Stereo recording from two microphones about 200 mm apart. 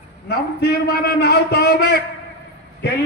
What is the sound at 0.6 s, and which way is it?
A man's voice, 50° left (ahead or behind).